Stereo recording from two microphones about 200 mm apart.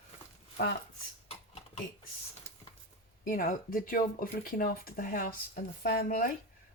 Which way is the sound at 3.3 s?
45° left (ahead or behind).